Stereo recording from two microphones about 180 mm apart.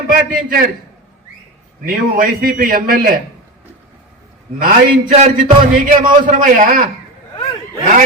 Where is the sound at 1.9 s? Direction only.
50° right (ahead or behind).